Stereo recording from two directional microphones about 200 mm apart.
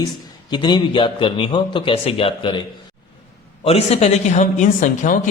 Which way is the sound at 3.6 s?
30° left (ahead or behind).